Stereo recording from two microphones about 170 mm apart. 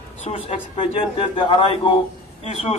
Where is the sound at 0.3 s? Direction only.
30° left (ahead or behind).